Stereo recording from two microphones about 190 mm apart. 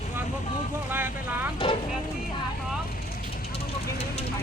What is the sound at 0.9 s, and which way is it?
Vehicle, 10° right (ahead or behind).